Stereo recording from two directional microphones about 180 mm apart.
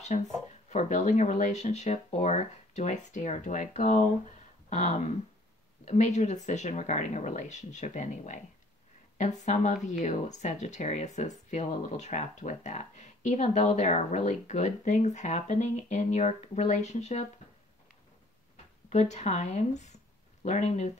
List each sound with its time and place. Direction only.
0.1 s speech: 40° left (ahead or behind)
18.9 s speech: 40° left (ahead or behind)